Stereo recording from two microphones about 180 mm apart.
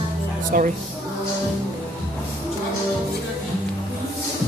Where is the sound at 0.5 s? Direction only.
55° right (ahead or behind).